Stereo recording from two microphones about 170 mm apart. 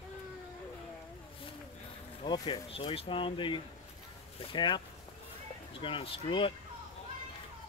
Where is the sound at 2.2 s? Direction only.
25° left (ahead or behind).